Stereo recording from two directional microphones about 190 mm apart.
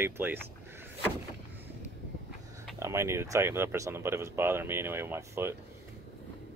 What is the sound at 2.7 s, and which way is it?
Speech, 15° right (ahead or behind).